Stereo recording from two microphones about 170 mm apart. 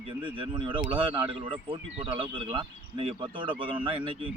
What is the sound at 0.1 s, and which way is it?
Speech, 30° right (ahead or behind).